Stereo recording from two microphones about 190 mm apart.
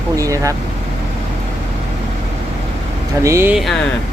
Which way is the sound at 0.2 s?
15° right (ahead or behind).